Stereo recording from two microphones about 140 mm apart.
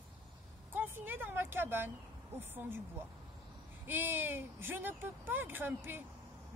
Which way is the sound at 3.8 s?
15° right (ahead or behind).